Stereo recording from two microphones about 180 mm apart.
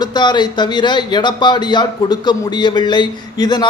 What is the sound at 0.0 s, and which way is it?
Speech, 25° left (ahead or behind).